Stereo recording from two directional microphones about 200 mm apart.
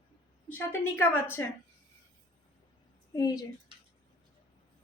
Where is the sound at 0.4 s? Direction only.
10° left (ahead or behind).